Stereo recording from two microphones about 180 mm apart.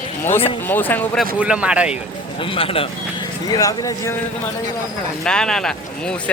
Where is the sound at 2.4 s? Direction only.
30° left (ahead or behind).